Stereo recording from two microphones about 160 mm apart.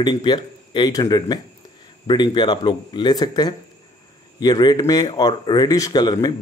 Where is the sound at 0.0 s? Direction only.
30° left (ahead or behind).